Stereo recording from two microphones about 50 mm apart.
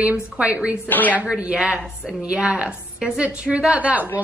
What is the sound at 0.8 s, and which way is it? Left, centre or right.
Speech, left.